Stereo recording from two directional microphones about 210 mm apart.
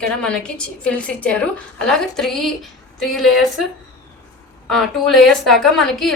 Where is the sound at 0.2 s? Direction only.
5° left (ahead or behind).